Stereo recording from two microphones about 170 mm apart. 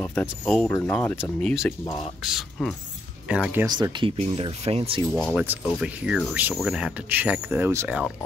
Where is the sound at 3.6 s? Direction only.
25° right (ahead or behind).